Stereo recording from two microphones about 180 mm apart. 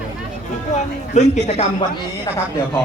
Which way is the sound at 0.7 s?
40° left (ahead or behind).